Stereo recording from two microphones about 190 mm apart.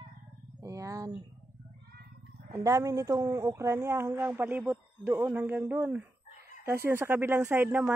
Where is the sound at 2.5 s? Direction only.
15° right (ahead or behind).